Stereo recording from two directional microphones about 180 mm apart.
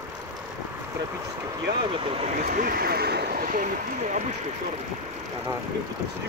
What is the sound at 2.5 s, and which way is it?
Speech, 55° right (ahead or behind).